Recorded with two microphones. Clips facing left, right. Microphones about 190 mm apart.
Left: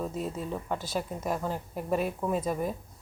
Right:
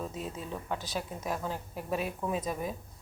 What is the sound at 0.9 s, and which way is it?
Speech, centre (ahead or behind).